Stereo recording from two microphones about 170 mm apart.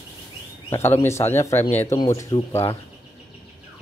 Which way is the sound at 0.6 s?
15° left (ahead or behind).